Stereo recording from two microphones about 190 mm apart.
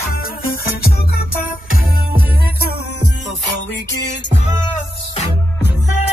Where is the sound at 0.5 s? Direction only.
50° left (ahead or behind).